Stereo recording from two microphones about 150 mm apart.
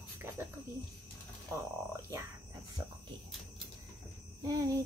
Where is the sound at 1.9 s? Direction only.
20° right (ahead or behind).